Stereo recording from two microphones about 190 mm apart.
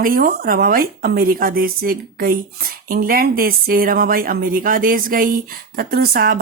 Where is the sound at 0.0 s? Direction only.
50° right (ahead or behind).